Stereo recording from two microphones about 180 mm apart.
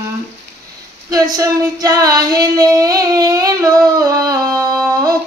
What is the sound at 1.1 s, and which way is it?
Female singing, 20° right (ahead or behind).